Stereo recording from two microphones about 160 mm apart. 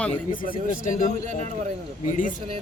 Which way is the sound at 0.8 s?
55° left (ahead or behind).